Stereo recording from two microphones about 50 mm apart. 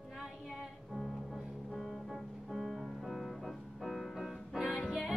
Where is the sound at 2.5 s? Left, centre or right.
Centre.